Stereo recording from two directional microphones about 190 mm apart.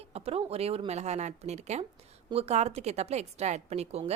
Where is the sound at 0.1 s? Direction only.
30° right (ahead or behind).